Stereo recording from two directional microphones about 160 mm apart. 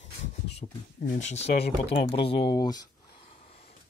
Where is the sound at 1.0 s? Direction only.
50° left (ahead or behind); by 2.9 s 25° left (ahead or behind).